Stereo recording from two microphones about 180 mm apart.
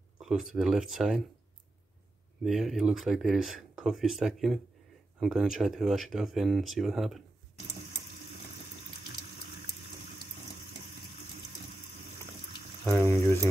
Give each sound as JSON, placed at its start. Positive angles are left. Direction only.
{"t": 0.2, "sound": "speech", "side_deg": 0}
{"t": 2.4, "sound": "speech", "side_deg": 0}
{"t": 12.9, "sound": "a sound", "side_deg": 15}